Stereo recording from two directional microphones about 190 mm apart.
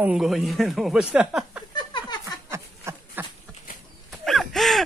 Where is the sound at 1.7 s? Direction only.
25° left (ahead or behind).